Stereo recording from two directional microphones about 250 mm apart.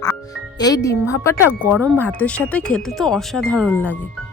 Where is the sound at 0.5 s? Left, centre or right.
Centre.